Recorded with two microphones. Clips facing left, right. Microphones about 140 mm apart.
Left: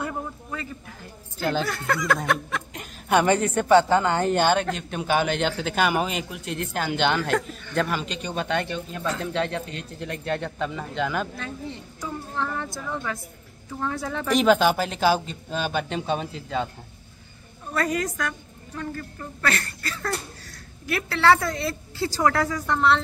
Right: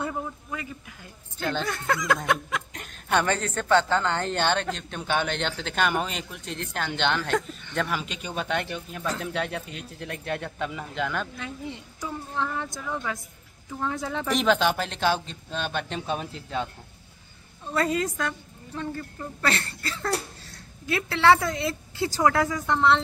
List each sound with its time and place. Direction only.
0.0 s a sound: 15° right (ahead or behind)
1.4 s a woman's voice: 5° left (ahead or behind)
11.3 s a woman's voice: 15° right (ahead or behind)
14.2 s a woman's voice: centre (ahead or behind)
17.7 s speech: 25° right (ahead or behind)